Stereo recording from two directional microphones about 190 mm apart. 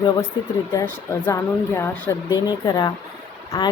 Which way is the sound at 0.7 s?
15° left (ahead or behind).